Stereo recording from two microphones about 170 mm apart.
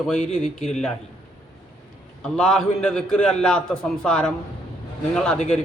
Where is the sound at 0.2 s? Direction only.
40° left (ahead or behind).